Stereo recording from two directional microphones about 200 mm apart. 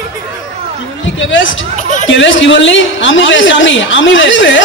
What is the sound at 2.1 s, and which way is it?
A man's voice, 70° left (ahead or behind).